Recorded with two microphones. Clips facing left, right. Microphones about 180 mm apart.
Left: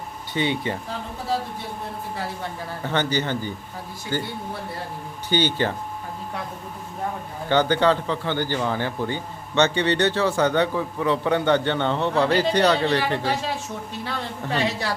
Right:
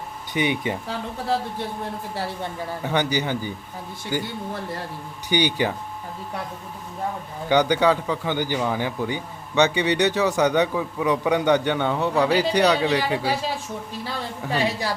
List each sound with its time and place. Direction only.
0.3 s a man's voice: 15° right (ahead or behind)
2.8 s a man's voice: 15° right (ahead or behind)
5.3 s a man's voice: 15° right (ahead or behind)
7.4 s a man's voice: 15° right (ahead or behind)